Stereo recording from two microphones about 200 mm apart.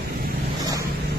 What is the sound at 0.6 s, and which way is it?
Vehicle, 15° right (ahead or behind).